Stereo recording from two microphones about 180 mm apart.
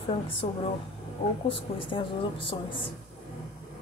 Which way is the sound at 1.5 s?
30° left (ahead or behind).